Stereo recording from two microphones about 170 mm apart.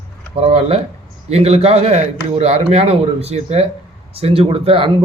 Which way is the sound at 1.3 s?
35° right (ahead or behind).